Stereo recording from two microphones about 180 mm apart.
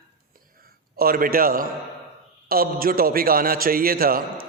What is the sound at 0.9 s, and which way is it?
A man's voice, 55° right (ahead or behind).